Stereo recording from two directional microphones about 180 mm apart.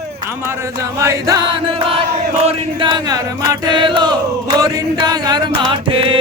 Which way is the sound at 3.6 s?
25° right (ahead or behind).